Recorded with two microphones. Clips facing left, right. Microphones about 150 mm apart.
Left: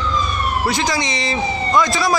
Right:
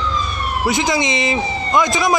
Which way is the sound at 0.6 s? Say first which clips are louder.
Right 5 dB; 20° right (ahead or behind).